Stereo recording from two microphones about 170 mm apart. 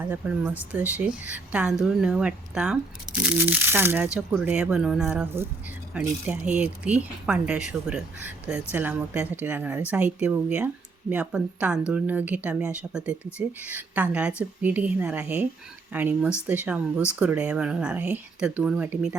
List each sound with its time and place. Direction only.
0.0 s speech: 10° right (ahead or behind)